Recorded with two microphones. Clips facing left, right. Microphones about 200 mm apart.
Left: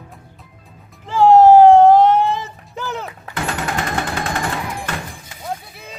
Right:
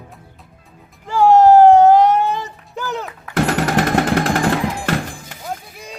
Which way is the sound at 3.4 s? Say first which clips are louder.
Right 7 dB; 75° right (ahead or behind).